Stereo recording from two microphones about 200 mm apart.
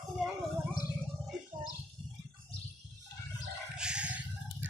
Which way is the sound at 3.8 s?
5° right (ahead or behind).